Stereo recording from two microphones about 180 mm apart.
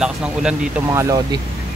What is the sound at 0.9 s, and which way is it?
Speech, 20° right (ahead or behind).